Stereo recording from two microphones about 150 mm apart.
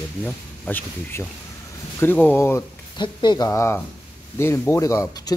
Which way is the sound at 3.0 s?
30° left (ahead or behind).